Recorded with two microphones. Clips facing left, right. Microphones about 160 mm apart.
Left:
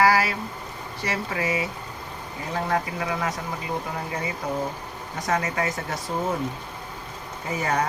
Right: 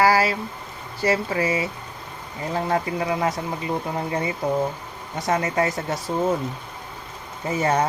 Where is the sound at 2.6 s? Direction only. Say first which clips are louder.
Right 3 dB; 30° right (ahead or behind).